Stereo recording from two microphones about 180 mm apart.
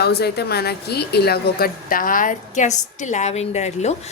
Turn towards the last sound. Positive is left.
turn(degrees=40)  # may be behind; listen again after turning